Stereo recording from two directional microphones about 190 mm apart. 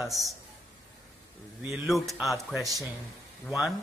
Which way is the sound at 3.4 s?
Centre (ahead or behind).